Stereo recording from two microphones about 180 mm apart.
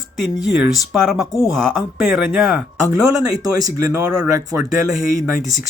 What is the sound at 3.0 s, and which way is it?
Speech, 20° right (ahead or behind).